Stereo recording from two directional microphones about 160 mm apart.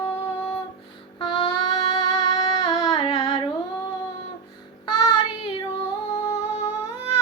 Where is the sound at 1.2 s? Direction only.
35° left (ahead or behind).